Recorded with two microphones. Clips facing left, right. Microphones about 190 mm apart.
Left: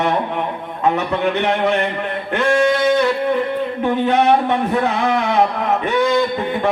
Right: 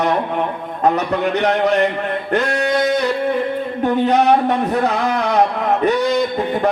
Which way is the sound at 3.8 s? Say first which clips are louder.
Right 2 dB; 40° right (ahead or behind).